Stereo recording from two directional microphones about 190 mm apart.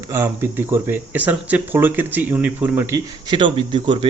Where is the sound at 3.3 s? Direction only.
25° right (ahead or behind).